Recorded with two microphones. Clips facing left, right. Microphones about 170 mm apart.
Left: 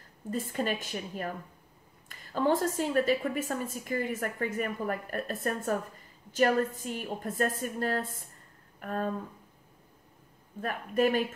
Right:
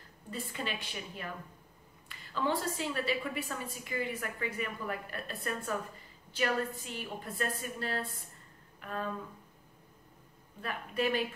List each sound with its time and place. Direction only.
0.3 s a woman's voice: 45° left (ahead or behind)
8.7 s a sound: 45° left (ahead or behind)
10.6 s a woman's voice: 45° left (ahead or behind)